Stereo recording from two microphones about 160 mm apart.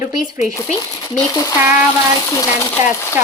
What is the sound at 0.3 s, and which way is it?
Speech, 50° left (ahead or behind).